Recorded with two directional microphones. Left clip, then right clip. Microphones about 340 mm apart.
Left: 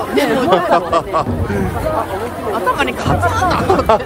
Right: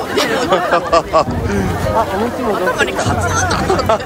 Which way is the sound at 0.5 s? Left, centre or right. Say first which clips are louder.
Right 2 dB; centre.